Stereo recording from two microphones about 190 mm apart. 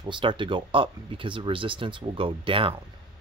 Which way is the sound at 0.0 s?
25° right (ahead or behind).